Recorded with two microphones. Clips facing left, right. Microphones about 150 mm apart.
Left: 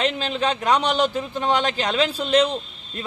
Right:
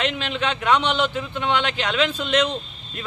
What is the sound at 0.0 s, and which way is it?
Speech, 35° left (ahead or behind).